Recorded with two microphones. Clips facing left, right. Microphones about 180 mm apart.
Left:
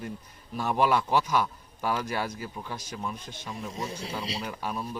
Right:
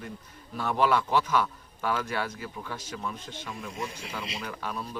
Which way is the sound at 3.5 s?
35° left (ahead or behind).